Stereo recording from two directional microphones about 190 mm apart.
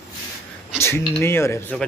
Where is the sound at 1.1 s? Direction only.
10° left (ahead or behind).